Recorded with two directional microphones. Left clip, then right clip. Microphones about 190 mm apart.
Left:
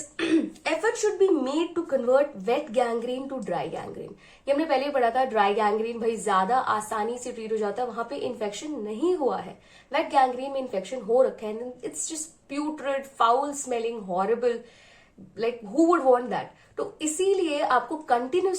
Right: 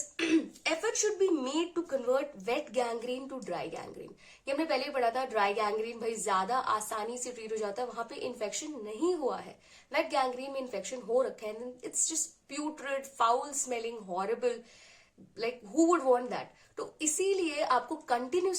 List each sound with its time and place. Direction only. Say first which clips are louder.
0.2 s speech: left 5 dB; 30° right (ahead or behind)